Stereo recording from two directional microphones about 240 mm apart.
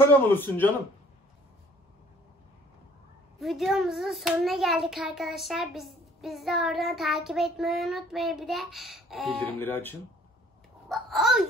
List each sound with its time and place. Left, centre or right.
0.0 s speech: centre
3.3 s a child's voice: centre
9.3 s speech: right
9.6 s a child's voice: centre